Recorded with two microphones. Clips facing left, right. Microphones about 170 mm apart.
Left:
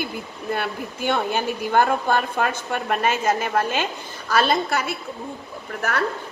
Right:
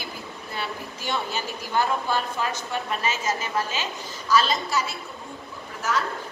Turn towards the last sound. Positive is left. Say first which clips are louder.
# left 1 dB
turn(degrees=60)  # may be behind; listen again after turning